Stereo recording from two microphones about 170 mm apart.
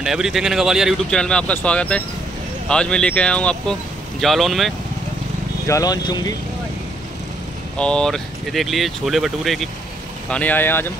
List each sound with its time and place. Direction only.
0.0 s speech: 5° right (ahead or behind)
5.7 s speech: 20° left (ahead or behind)
7.7 s speech: 5° left (ahead or behind)